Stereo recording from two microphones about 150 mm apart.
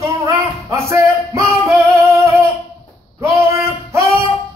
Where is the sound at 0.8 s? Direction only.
20° right (ahead or behind).